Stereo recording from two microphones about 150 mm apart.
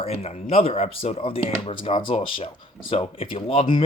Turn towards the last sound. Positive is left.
turn(degrees=35)  # may be behind; listen again after turning